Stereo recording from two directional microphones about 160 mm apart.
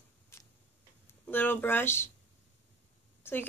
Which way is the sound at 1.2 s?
10° left (ahead or behind).